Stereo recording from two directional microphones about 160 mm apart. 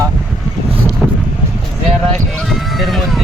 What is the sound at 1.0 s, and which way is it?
Vehicle, 5° right (ahead or behind).